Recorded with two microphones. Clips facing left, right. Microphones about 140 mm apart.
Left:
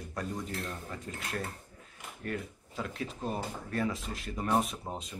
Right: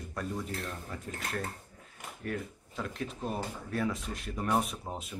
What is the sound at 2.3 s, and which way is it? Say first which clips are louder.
Speech: even; centre (ahead or behind).